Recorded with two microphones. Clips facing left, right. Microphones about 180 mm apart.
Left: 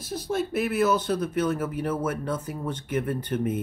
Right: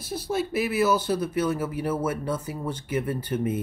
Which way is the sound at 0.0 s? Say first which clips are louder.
Even; 10° right (ahead or behind).